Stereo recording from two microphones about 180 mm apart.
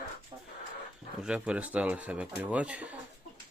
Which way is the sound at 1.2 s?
5° right (ahead or behind).